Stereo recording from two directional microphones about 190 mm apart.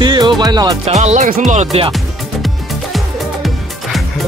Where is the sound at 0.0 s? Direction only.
25° right (ahead or behind).